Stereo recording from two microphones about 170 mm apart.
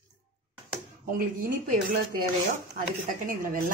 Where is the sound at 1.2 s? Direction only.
55° right (ahead or behind).